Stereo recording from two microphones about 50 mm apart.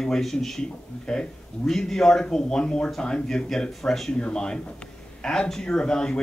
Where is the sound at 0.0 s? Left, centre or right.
Centre.